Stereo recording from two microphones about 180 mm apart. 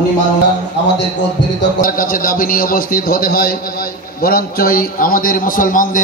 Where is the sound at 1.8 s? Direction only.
50° left (ahead or behind).